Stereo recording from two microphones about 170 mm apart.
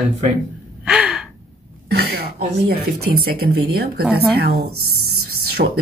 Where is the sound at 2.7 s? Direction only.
65° right (ahead or behind).